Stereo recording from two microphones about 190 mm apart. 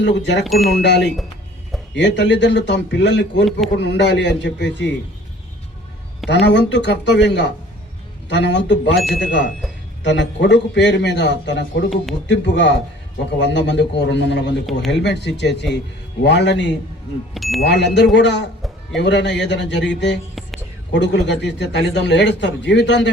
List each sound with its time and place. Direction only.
0.0 s speech: 65° left (ahead or behind)
0.4 s speech: centre (ahead or behind)
0.8 s speech: 65° left (ahead or behind)
6.3 s speech: 65° left (ahead or behind)
9.0 s speech: centre (ahead or behind)
9.2 s speech: 65° left (ahead or behind)
17.3 s speech: centre (ahead or behind)
17.6 s speech: 65° left (ahead or behind)